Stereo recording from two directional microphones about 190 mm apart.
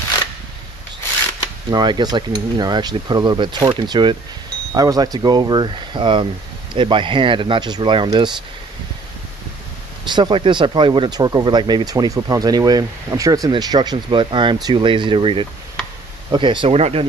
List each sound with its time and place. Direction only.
1.4 s speech: 20° right (ahead or behind)
10.0 s speech: 25° right (ahead or behind)